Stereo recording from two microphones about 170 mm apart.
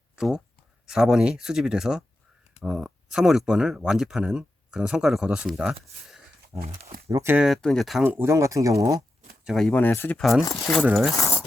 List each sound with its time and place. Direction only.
0.2 s speech: 5° right (ahead or behind)
6.5 s speech: 15° right (ahead or behind)
7.4 s speech: centre (ahead or behind)
8.0 s speech: 15° right (ahead or behind)
9.4 s speech: centre (ahead or behind)
10.2 s speech: centre (ahead or behind)
11.1 s dog: 15° left (ahead or behind)